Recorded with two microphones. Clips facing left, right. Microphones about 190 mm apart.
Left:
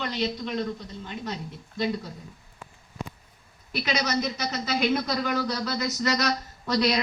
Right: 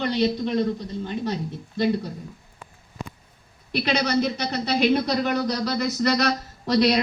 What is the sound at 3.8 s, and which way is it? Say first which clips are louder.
Speech: right 4 dB; 55° right (ahead or behind).